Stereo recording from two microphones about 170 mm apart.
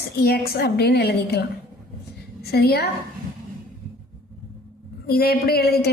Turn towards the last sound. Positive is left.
turn(degrees=65)  # may be behind; listen again after turning